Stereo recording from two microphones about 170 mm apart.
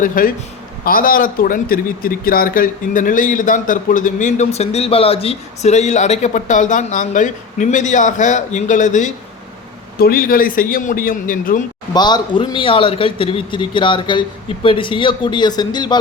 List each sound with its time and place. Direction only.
0.0 s a man's voice: 55° left (ahead or behind)
10.0 s a man's voice: 60° left (ahead or behind)
11.9 s a man's voice: 25° left (ahead or behind)